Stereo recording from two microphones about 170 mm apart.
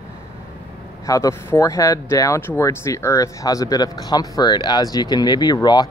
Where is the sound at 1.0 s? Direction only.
20° left (ahead or behind).